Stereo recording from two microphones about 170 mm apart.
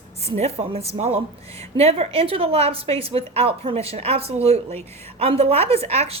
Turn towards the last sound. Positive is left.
turn(degrees=-35)  # may be behind; listen again after turning